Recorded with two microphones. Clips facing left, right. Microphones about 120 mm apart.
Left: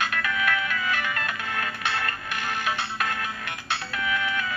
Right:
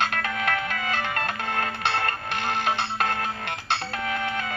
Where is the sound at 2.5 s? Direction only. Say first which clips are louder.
Right 3 dB; 55° right (ahead or behind).